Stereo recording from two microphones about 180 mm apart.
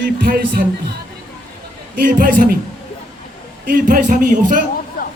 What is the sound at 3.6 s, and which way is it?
Speech, 50° right (ahead or behind).